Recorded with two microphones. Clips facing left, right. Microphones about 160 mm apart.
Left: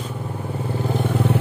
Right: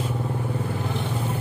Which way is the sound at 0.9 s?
55° left (ahead or behind).